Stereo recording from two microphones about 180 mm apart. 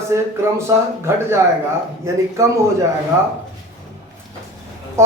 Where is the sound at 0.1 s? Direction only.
15° right (ahead or behind).